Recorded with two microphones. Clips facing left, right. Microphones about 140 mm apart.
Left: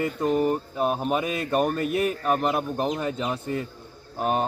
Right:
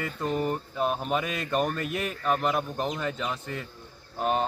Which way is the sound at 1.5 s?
35° left (ahead or behind).